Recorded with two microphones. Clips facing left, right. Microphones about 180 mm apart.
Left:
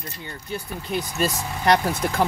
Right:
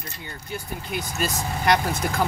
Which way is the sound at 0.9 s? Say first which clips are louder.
Left 4 dB; 30° left (ahead or behind).